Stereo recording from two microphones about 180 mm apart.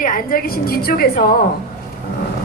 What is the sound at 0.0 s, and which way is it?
A woman's voice, 50° left (ahead or behind).